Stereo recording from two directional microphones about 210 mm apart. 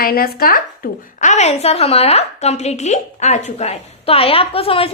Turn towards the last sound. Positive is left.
turn(degrees=25)  # may be behind; listen again after turning